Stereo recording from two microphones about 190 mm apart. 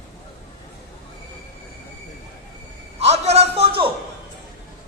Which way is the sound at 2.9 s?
35° right (ahead or behind).